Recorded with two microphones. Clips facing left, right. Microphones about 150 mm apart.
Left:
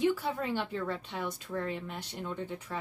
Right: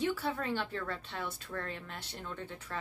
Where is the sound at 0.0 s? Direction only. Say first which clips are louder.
Left 4 dB; 15° left (ahead or behind).